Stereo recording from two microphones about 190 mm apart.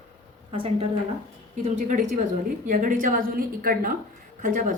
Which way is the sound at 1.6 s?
40° right (ahead or behind).